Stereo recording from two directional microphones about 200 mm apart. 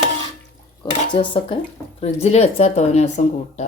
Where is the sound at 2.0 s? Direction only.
30° left (ahead or behind).